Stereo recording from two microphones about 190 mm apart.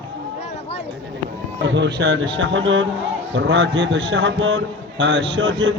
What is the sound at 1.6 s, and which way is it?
Speech, 65° right (ahead or behind).